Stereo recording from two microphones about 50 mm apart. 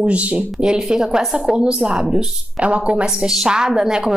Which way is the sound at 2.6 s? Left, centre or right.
Right.